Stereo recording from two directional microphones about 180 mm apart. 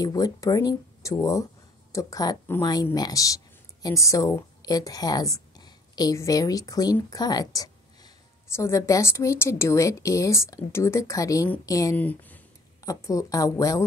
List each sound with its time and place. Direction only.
0.0 s a woman's voice: 20° left (ahead or behind)